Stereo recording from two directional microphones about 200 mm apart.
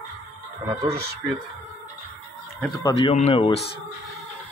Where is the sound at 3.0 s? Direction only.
30° left (ahead or behind).